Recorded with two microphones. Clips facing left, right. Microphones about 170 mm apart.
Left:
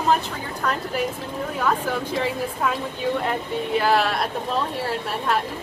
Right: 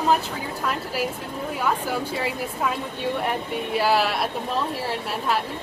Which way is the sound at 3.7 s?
5° right (ahead or behind).